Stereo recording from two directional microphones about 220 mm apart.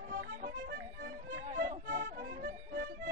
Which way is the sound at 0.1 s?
45° right (ahead or behind).